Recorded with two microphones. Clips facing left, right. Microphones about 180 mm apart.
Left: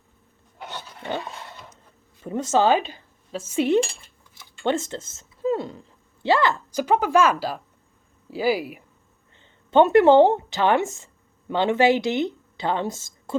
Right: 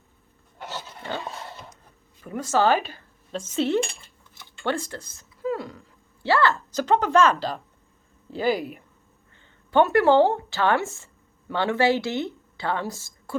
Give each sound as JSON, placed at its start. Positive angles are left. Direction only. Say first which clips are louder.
{"t": 0.6, "sound": "roaring cats", "louder": "right 1 dB", "side_deg": -5}
{"t": 2.2, "sound": "speech", "louder": "left 2 dB", "side_deg": 25}
{"t": 9.7, "sound": "a woman's voice", "louder": "left 4 dB", "side_deg": 20}